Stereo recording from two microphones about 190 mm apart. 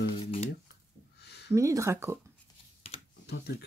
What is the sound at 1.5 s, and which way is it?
Speech, 15° right (ahead or behind).